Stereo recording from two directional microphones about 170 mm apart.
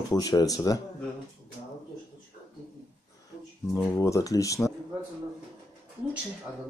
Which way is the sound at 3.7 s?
20° left (ahead or behind).